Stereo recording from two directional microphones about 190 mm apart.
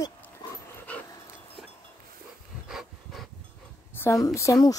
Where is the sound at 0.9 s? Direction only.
10° left (ahead or behind).